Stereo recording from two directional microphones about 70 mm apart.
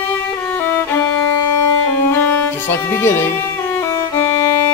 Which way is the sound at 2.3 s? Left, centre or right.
Left.